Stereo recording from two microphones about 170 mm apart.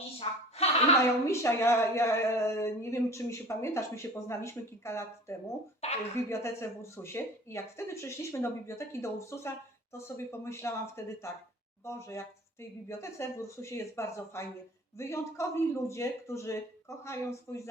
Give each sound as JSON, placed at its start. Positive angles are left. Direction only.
{"t": 0.6, "sound": "a sound", "side_deg": 40}
{"t": 1.2, "sound": "speech", "side_deg": 15}
{"t": 5.8, "sound": "speech", "side_deg": 40}
{"t": 6.2, "sound": "speech", "side_deg": 15}